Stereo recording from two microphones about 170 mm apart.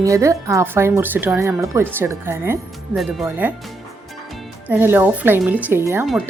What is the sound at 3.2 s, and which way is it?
Speech, 10° right (ahead or behind).